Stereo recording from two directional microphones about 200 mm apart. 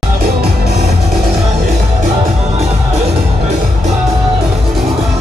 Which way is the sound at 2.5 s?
30° right (ahead or behind).